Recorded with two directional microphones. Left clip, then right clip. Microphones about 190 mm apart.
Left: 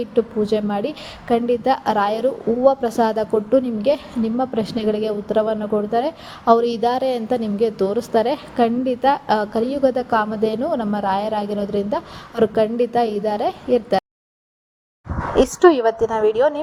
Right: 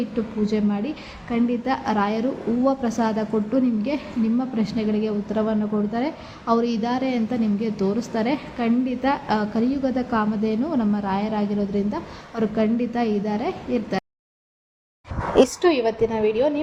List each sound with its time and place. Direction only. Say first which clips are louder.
0.1 s a woman's voice: left 7 dB; 30° left (ahead or behind)
15.1 s a sound: even; centre (ahead or behind)
15.6 s a woman's voice: left 5 dB; 30° left (ahead or behind)